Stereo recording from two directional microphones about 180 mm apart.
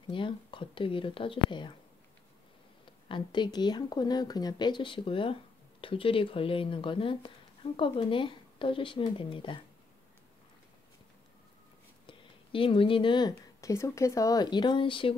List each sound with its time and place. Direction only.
0.1 s speech: 30° left (ahead or behind)
2.8 s speech: 25° left (ahead or behind)
12.1 s speech: 30° left (ahead or behind)